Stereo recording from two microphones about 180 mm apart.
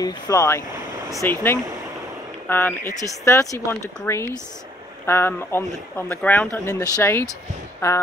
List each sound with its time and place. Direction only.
0.0 s speech: 20° left (ahead or behind)